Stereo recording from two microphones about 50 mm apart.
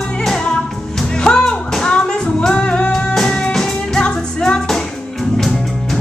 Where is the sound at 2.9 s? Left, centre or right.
Centre.